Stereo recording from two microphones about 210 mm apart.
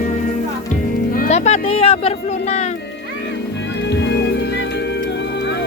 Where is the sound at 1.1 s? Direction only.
35° left (ahead or behind).